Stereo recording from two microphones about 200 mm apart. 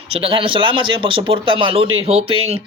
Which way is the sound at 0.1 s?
25° right (ahead or behind).